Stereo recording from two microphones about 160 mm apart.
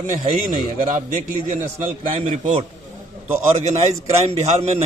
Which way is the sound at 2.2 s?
50° right (ahead or behind).